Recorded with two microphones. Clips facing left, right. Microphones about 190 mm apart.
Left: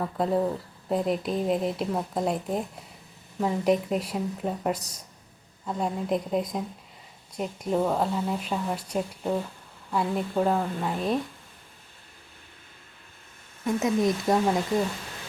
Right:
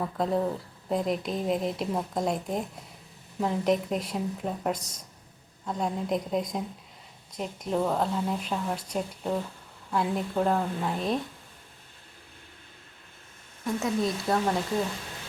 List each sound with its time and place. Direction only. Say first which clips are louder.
0.0 s speech: left 2 dB; 5° left (ahead or behind)
13.7 s speech: left 4 dB; 20° left (ahead or behind)